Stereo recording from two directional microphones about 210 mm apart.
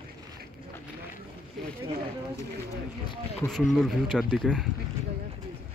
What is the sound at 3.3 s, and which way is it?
Speech, centre (ahead or behind).